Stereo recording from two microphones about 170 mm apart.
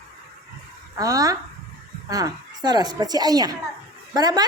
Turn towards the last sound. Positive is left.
turn(degrees=-25)  # may be behind; listen again after turning